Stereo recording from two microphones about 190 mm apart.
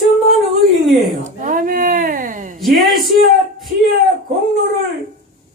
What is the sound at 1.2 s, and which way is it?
Speech, 40° right (ahead or behind).